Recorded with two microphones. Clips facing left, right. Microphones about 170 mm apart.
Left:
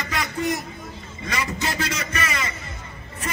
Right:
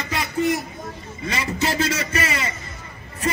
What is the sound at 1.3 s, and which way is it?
A man's voice, 30° right (ahead or behind).